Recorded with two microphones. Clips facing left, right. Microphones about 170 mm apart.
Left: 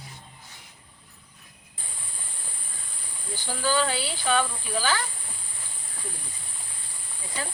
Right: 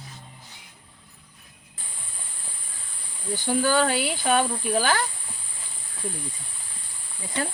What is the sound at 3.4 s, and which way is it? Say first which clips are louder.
Speech: right 4 dB; 50° right (ahead or behind).